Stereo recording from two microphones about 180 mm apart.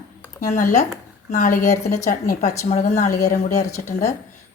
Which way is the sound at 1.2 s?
50° left (ahead or behind).